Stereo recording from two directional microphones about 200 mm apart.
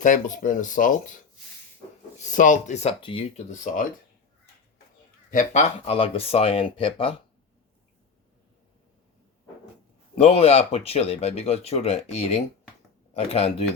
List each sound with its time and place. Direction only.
0.0 s speech: 40° left (ahead or behind)
2.1 s speech: 40° left (ahead or behind)
5.3 s speech: 35° left (ahead or behind)
10.2 s speech: 30° left (ahead or behind)